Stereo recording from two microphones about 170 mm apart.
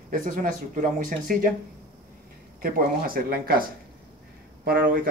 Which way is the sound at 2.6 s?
60° right (ahead or behind).